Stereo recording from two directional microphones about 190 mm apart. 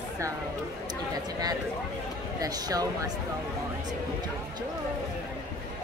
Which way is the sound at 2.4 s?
20° right (ahead or behind).